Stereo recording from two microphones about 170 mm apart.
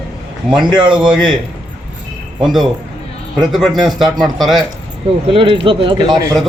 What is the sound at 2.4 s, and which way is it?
A man's voice, centre (ahead or behind).